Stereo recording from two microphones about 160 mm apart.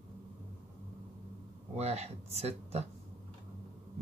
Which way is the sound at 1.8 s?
40° right (ahead or behind).